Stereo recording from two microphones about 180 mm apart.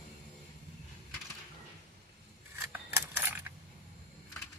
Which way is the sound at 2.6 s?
15° right (ahead or behind).